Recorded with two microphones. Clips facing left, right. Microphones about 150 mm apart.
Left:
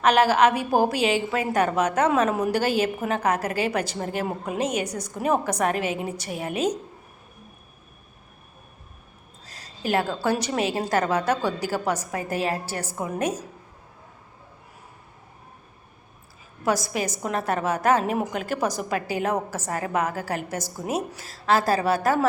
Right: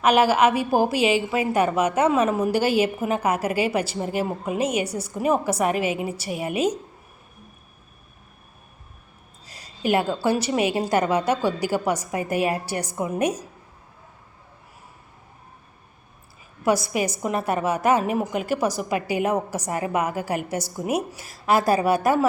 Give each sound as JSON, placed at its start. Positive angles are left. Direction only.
{"t": 0.0, "sound": "a woman's voice", "side_deg": -10}
{"t": 9.5, "sound": "a sound", "side_deg": -10}
{"t": 10.2, "sound": "a woman's voice", "side_deg": -5}
{"t": 16.6, "sound": "a woman's voice", "side_deg": -10}